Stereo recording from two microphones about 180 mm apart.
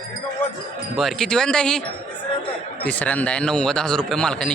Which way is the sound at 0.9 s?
Centre (ahead or behind).